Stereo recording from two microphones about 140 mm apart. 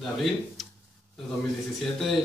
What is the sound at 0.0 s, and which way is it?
Speech, centre (ahead or behind).